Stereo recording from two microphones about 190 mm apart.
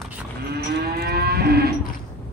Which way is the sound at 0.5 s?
55° right (ahead or behind).